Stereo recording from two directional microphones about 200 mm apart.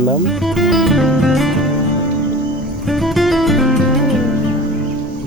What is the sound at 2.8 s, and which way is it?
Music, centre (ahead or behind).